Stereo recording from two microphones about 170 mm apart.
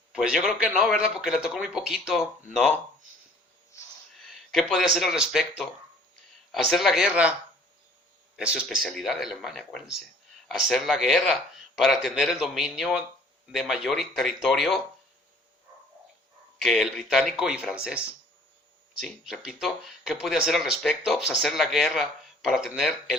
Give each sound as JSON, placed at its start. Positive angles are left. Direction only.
{"t": 0.1, "sound": "speech", "side_deg": -5}
{"t": 3.7, "sound": "snort", "side_deg": 15}
{"t": 4.2, "sound": "a sound", "side_deg": 0}
{"t": 4.9, "sound": "speech", "side_deg": 0}
{"t": 8.4, "sound": "speech", "side_deg": -5}
{"t": 16.6, "sound": "speech", "side_deg": 0}